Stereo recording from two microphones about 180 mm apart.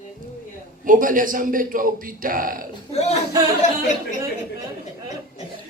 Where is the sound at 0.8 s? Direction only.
50° right (ahead or behind).